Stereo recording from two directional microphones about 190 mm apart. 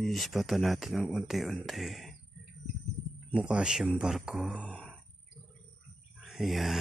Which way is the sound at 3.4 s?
5° right (ahead or behind).